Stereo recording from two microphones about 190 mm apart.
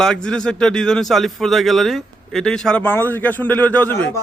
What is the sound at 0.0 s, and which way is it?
Speech, 5° left (ahead or behind).